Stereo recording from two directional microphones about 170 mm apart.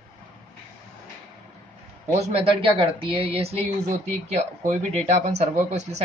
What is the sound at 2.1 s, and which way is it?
Speech, 35° right (ahead or behind).